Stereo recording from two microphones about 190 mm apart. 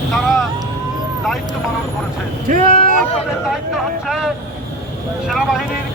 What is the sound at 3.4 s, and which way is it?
Speech, centre (ahead or behind).